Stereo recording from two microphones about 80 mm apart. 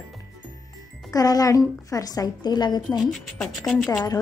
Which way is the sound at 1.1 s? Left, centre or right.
Left.